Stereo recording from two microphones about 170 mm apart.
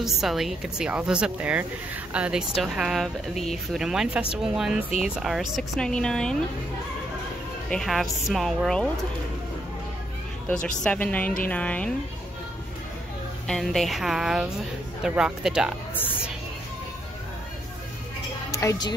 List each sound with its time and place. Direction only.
0.0 s speech: centre (ahead or behind)
7.7 s speech: centre (ahead or behind)
10.5 s a woman's voice: 5° left (ahead or behind)
13.5 s speech: centre (ahead or behind)
18.5 s speech: 20° left (ahead or behind)